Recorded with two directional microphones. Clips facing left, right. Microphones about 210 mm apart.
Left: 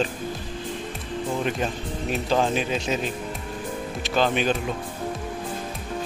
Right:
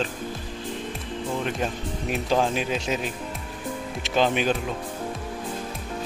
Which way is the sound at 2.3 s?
5° right (ahead or behind).